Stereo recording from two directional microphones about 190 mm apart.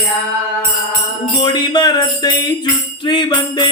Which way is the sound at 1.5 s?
20° left (ahead or behind).